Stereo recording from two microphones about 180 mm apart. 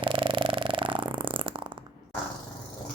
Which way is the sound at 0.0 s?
30° right (ahead or behind).